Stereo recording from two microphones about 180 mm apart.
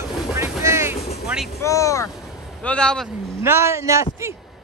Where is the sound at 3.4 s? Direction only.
15° right (ahead or behind).